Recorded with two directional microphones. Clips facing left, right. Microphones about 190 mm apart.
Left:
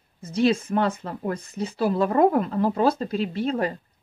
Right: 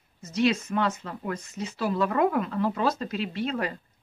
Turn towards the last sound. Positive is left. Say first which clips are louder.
# left 4 dB
turn(degrees=35)  # may be behind; listen again after turning